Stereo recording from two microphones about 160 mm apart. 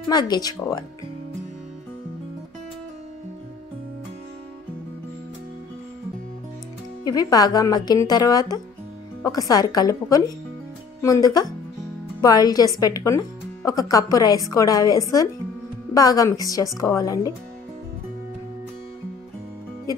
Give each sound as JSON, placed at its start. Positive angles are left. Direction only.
{"t": 0.1, "sound": "a woman's voice", "side_deg": 25}
{"t": 7.1, "sound": "a woman's voice", "side_deg": 25}